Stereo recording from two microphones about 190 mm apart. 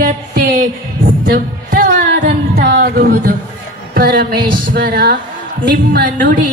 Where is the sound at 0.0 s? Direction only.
55° right (ahead or behind).